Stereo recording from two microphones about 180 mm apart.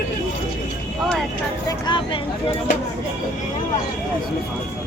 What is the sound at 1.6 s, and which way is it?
Vehicle, 25° left (ahead or behind).